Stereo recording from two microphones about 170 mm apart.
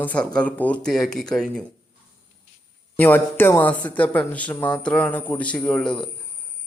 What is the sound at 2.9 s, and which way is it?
Speech, 10° left (ahead or behind).